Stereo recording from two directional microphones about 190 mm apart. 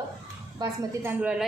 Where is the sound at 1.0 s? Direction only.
5° right (ahead or behind).